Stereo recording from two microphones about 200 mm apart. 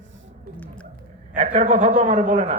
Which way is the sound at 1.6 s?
40° right (ahead or behind).